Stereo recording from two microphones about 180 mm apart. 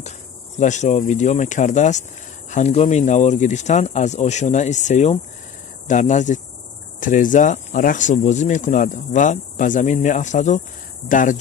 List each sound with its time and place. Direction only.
0.6 s speech: 40° left (ahead or behind)